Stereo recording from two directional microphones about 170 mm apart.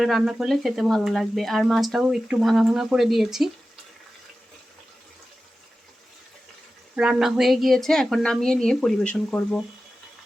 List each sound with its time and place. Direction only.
0.0 s speech: centre (ahead or behind)
6.9 s speech: 5° right (ahead or behind)